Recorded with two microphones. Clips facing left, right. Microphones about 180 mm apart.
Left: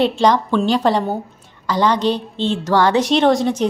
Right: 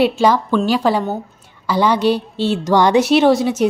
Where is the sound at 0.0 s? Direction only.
5° right (ahead or behind).